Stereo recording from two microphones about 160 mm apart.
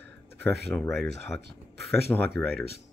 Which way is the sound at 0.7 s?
15° left (ahead or behind).